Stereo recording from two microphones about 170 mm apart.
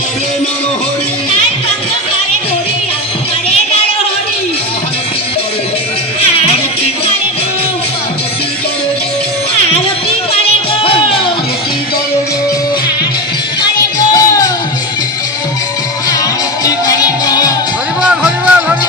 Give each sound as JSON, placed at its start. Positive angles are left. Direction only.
{"t": 6.3, "sound": "music", "side_deg": 35}
{"t": 10.3, "sound": "music", "side_deg": 35}
{"t": 13.6, "sound": "music", "side_deg": 20}
{"t": 16.6, "sound": "music", "side_deg": 20}
{"t": 18.0, "sound": "music", "side_deg": -5}